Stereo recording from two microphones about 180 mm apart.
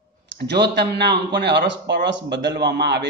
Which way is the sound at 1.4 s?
70° right (ahead or behind).